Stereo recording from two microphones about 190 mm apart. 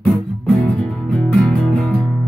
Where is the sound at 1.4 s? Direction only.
5° left (ahead or behind).